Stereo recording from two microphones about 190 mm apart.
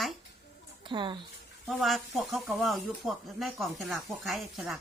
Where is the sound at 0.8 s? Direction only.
25° right (ahead or behind).